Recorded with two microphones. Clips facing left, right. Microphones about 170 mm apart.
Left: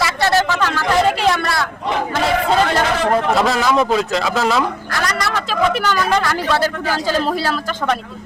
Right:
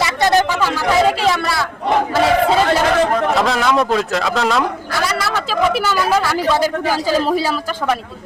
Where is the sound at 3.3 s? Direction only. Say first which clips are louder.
Even; centre (ahead or behind).